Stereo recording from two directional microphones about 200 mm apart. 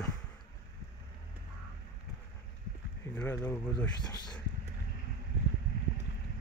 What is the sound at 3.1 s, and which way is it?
Speech, 10° left (ahead or behind).